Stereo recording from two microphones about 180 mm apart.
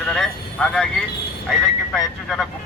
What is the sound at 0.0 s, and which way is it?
Vehicle, 5° left (ahead or behind).